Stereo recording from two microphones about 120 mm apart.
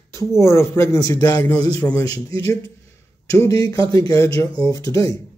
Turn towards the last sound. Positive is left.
turn(degrees=25)  # may be behind; listen again after turning